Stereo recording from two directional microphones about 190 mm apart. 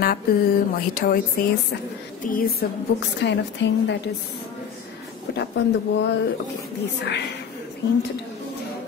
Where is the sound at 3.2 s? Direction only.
65° left (ahead or behind).